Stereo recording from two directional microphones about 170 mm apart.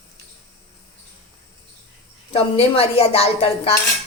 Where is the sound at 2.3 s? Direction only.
35° left (ahead or behind).